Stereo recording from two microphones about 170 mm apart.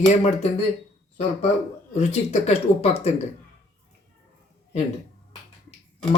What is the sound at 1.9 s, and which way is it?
A man's voice, 40° left (ahead or behind).